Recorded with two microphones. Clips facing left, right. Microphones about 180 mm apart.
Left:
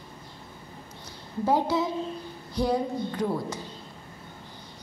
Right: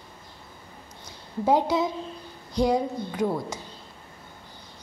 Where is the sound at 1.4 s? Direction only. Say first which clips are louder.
Right 2 dB; 15° right (ahead or behind).